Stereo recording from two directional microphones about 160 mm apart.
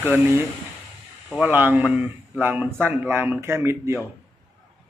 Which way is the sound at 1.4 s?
10° right (ahead or behind).